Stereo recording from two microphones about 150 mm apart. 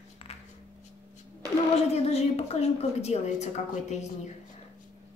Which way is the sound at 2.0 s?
45° left (ahead or behind).